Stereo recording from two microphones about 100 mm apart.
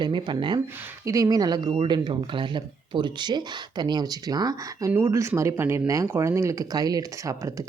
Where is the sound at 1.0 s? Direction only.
35° right (ahead or behind).